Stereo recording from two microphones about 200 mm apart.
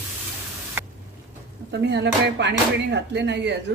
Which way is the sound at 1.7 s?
55° right (ahead or behind).